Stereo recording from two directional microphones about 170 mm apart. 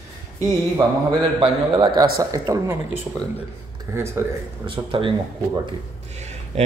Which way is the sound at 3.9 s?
15° right (ahead or behind).